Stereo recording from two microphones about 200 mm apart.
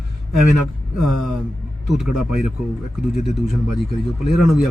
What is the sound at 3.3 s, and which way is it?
Speech, centre (ahead or behind).